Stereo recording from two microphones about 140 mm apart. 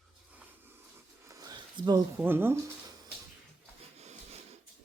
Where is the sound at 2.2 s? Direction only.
15° right (ahead or behind).